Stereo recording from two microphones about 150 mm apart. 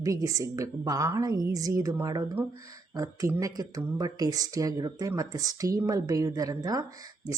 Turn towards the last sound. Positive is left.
turn(degrees=-25)  # may be behind; listen again after turning